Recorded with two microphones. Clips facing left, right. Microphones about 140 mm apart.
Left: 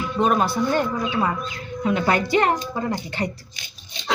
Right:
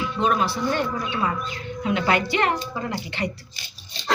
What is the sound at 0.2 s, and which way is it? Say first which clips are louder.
A woman's voice: left 3 dB; 45° left (ahead or behind).